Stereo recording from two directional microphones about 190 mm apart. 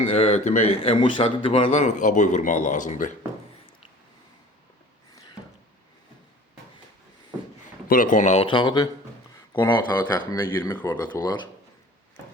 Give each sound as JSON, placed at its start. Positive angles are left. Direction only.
{"t": 0.0, "sound": "a man's voice", "side_deg": 35}
{"t": 7.9, "sound": "a man's voice", "side_deg": 45}